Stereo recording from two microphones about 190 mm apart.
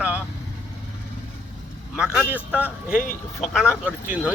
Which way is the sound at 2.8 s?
45° left (ahead or behind).